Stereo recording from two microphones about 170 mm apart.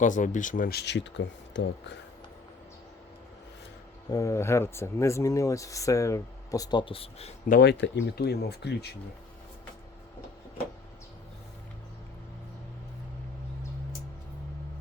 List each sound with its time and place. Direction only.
0.0 s speech: 50° left (ahead or behind); by 2.0 s 90° left
4.1 s speech: 20° left (ahead or behind); by 7.3 s 35° left (ahead or behind)
7.4 s speech: 65° left (ahead or behind)